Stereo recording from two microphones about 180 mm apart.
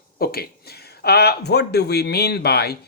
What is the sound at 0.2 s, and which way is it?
Speech, 60° left (ahead or behind).